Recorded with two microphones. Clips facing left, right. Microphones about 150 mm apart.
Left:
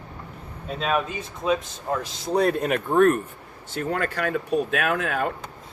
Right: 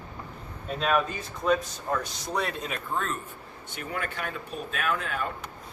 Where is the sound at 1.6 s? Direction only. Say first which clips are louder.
Left 2 dB; 25° left (ahead or behind).